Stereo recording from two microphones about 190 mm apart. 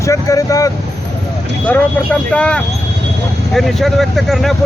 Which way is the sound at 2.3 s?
5° left (ahead or behind).